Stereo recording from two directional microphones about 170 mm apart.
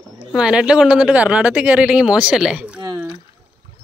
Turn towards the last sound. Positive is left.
turn(degrees=-5)  # may be behind; listen again after turning